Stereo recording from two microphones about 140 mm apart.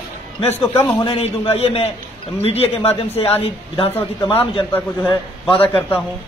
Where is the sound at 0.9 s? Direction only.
40° left (ahead or behind).